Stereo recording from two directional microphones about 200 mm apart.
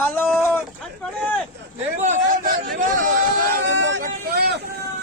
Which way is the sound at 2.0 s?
35° right (ahead or behind).